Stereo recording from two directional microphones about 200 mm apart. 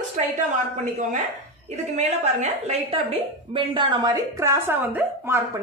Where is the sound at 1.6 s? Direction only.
35° right (ahead or behind).